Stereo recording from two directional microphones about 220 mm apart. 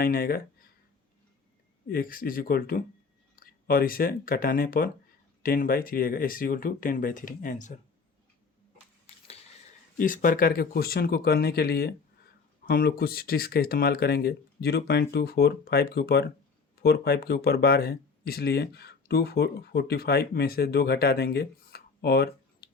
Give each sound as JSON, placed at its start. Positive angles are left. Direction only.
{"t": 0.0, "sound": "speech", "side_deg": 40}
{"t": 1.9, "sound": "speech", "side_deg": 40}
{"t": 10.0, "sound": "speech", "side_deg": 35}